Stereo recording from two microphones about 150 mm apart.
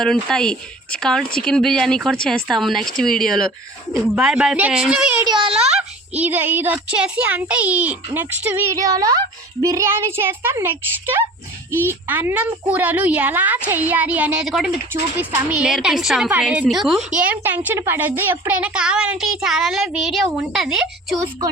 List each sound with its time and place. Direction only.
0.0 s speech: 5° left (ahead or behind)
5.2 s a woman's voice: 30° right (ahead or behind)
6.1 s a woman's voice: 10° right (ahead or behind)
8.7 s a woman's voice: 25° right (ahead or behind); by 21.2 s centre (ahead or behind)